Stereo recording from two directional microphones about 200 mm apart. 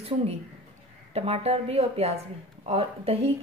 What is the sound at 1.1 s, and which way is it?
A woman's voice, 30° right (ahead or behind).